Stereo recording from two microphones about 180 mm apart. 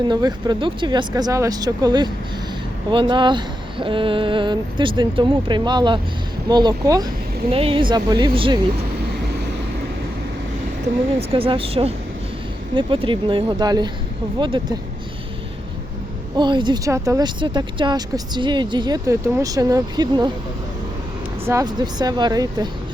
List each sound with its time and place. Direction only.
0.1 s speech: 25° right (ahead or behind)
7.5 s speech: 30° right (ahead or behind)
11.2 s speech: 30° right (ahead or behind)
16.4 s speech: 25° right (ahead or behind)
21.4 s speech: 20° right (ahead or behind)